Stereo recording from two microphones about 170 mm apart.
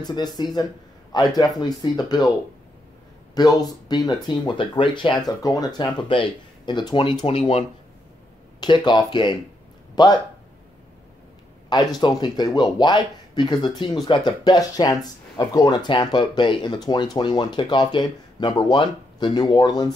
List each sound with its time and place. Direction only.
0.0 s speech: 25° left (ahead or behind)
3.3 s speech: 25° left (ahead or behind); by 7.6 s 40° left (ahead or behind)
8.5 s speech: 25° left (ahead or behind)
12.0 s speech: 25° left (ahead or behind)